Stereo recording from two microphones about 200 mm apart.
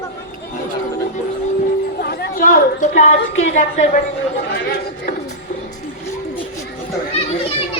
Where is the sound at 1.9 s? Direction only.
50° left (ahead or behind).